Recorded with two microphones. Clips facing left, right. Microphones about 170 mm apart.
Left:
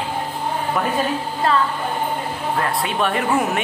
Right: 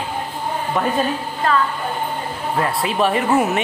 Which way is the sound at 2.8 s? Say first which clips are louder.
Right 2 dB; centre (ahead or behind).